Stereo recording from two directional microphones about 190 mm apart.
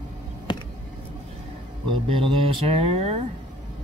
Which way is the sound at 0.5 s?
25° left (ahead or behind).